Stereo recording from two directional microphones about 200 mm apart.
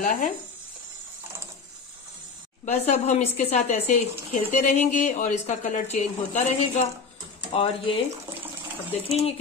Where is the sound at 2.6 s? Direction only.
35° left (ahead or behind).